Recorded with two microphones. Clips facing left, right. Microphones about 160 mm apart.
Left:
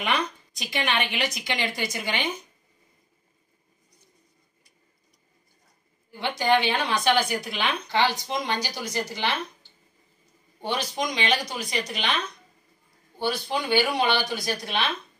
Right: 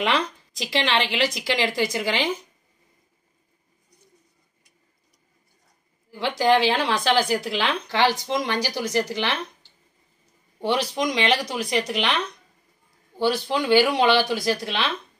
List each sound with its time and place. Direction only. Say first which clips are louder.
0.0 s a woman's voice: right 3 dB; 90° right
6.1 s speech: right 3 dB; 90° right
10.6 s speech: right 5 dB; 90° right
13.2 s speech: right 5 dB; 90° right